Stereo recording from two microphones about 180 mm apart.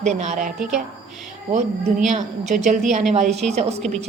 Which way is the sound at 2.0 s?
40° right (ahead or behind).